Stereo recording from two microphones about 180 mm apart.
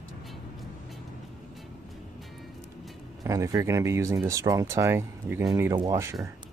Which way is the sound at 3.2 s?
20° right (ahead or behind).